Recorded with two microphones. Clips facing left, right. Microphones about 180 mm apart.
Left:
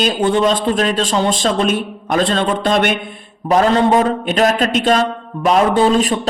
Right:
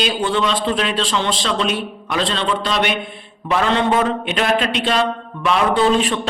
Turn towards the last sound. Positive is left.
turn(degrees=40)  # may be behind; listen again after turning